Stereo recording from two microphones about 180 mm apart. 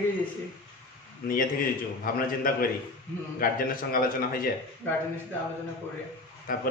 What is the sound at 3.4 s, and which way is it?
A man's voice, 50° left (ahead or behind).